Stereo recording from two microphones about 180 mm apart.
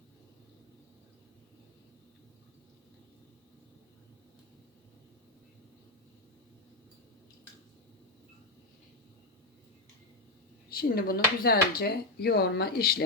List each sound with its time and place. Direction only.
10.8 s speech: 55° left (ahead or behind)